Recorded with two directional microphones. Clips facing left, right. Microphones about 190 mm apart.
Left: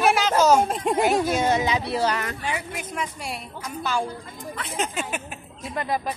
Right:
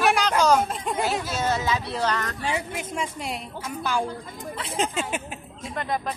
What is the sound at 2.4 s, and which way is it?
Speech, 25° right (ahead or behind).